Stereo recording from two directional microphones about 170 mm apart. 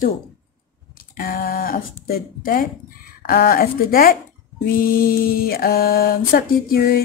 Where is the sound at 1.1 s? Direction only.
60° left (ahead or behind).